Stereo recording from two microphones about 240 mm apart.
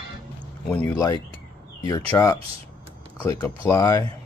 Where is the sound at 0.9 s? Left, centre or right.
Centre.